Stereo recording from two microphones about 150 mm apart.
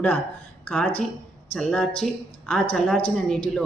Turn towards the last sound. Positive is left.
turn(degrees=5)  # may be behind; listen again after turning